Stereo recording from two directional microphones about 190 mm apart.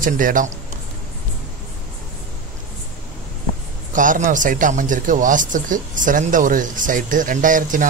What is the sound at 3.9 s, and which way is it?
Speech, 40° right (ahead or behind).